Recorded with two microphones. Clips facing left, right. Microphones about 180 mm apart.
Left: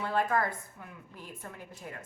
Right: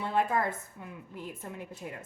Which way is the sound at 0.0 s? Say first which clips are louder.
Right 1 dB; 25° right (ahead or behind).